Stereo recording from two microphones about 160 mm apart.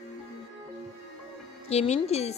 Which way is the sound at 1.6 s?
40° left (ahead or behind).